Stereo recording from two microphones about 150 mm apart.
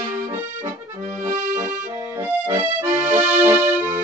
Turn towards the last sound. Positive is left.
turn(degrees=-15)  # may be behind; listen again after turning